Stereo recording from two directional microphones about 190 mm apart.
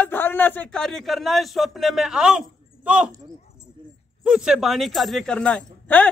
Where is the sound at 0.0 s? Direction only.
10° left (ahead or behind); by 3.1 s 5° right (ahead or behind).